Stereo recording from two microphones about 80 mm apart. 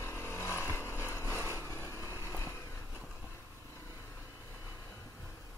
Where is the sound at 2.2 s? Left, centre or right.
Left.